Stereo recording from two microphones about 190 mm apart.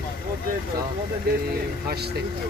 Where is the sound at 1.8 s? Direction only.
55° right (ahead or behind).